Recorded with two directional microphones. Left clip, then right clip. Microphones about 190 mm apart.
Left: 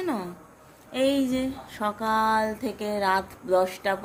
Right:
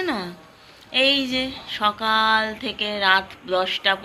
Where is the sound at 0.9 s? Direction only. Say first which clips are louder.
Right 5 dB; 25° left (ahead or behind).